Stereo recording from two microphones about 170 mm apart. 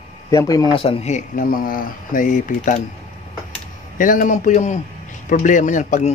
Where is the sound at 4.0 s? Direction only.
50° left (ahead or behind).